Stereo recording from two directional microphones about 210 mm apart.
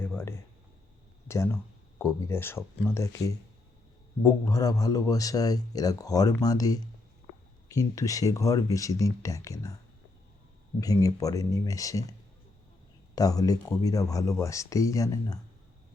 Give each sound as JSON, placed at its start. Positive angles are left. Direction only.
{"t": 0.0, "sound": "a sound", "side_deg": 10}
{"t": 1.3, "sound": "a man's voice", "side_deg": 10}
{"t": 10.8, "sound": "a man's voice", "side_deg": 15}
{"t": 13.1, "sound": "a man's voice", "side_deg": 15}